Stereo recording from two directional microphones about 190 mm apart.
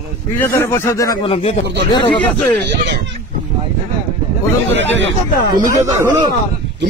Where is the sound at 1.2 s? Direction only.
30° left (ahead or behind).